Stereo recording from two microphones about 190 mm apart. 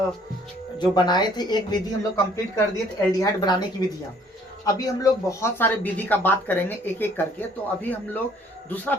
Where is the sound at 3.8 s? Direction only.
20° left (ahead or behind).